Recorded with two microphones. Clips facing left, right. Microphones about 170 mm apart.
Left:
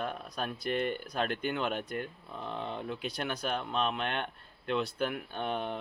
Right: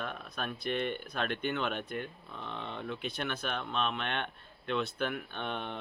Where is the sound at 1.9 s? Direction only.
40° left (ahead or behind).